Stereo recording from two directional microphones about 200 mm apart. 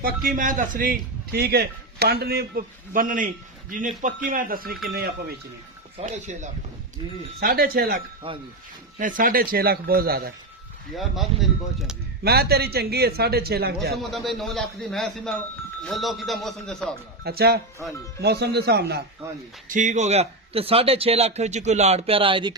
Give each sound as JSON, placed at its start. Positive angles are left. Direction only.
{"t": 0.0, "sound": "a man's voice", "side_deg": -45}
{"t": 6.0, "sound": "speech", "side_deg": -35}
{"t": 7.3, "sound": "a man's voice", "side_deg": -50}
{"t": 8.2, "sound": "speech", "side_deg": -25}
{"t": 9.0, "sound": "a man's voice", "side_deg": -40}
{"t": 10.9, "sound": "a man's voice", "side_deg": 0}
{"t": 12.2, "sound": "a man's voice", "side_deg": -50}
{"t": 13.9, "sound": "a man's voice", "side_deg": 0}
{"t": 17.2, "sound": "a man's voice", "side_deg": -50}
{"t": 17.8, "sound": "a man's voice", "side_deg": 0}
{"t": 18.2, "sound": "speech", "side_deg": -55}
{"t": 19.6, "sound": "speech", "side_deg": -40}